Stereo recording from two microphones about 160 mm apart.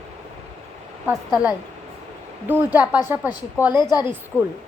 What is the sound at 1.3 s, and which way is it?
Speech, 5° right (ahead or behind).